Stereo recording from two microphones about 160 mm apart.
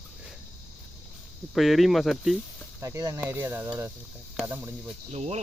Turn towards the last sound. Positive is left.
turn(degrees=-40)  # may be behind; listen again after turning